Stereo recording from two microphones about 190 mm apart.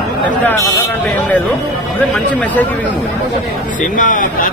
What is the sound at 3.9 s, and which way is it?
Speech, 45° left (ahead or behind).